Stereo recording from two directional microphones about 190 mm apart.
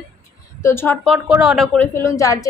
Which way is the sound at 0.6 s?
15° left (ahead or behind).